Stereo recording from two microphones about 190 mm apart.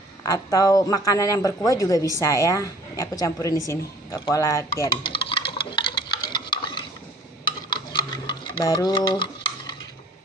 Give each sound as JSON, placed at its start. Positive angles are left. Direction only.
{"t": 0.2, "sound": "speech", "side_deg": 15}
{"t": 5.1, "sound": "a sound", "side_deg": 25}
{"t": 7.7, "sound": "stir", "side_deg": 20}